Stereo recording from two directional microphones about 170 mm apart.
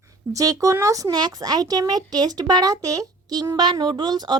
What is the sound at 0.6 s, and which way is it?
A child's voice, 20° right (ahead or behind).